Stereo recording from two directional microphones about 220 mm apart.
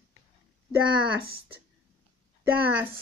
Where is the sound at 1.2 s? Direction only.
45° right (ahead or behind).